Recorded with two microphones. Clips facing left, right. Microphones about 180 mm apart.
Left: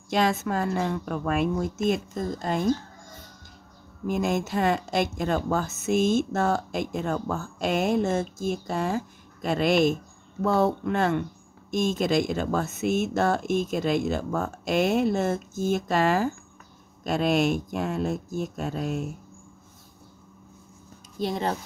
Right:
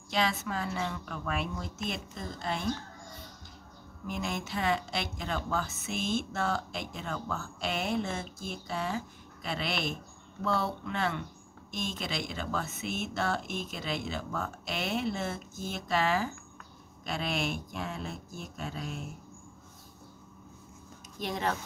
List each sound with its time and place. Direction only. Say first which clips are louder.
0.1 s speech: left 7 dB; 45° left (ahead or behind)
4.1 s speech: left 10 dB; 45° left (ahead or behind)
21.2 s speech: left 5 dB; 30° left (ahead or behind)